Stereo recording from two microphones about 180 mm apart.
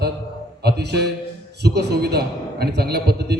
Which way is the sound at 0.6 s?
65° right (ahead or behind).